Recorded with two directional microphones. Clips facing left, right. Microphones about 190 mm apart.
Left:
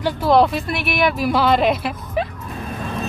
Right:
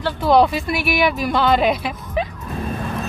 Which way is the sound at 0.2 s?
Centre (ahead or behind).